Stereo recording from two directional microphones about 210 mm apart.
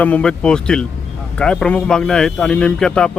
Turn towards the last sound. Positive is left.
turn(degrees=5)  # may be behind; listen again after turning